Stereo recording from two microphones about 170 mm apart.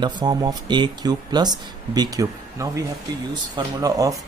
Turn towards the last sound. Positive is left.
turn(degrees=-20)  # may be behind; listen again after turning